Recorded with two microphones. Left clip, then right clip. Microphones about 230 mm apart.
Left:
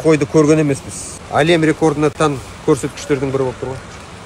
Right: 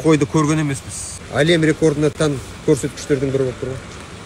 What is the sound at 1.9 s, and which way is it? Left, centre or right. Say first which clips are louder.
Speech: left 2 dB; left.